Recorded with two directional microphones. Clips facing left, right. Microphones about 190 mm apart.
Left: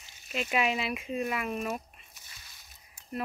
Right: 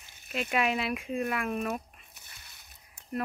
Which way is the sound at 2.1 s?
60° right (ahead or behind).